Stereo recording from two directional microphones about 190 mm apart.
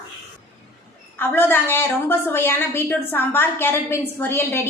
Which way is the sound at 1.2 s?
10° left (ahead or behind).